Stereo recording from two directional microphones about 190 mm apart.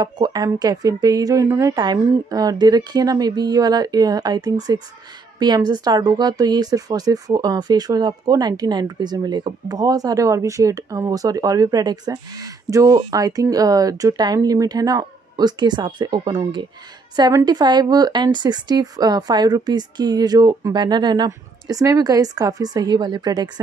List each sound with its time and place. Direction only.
0.0 s speech: 20° right (ahead or behind)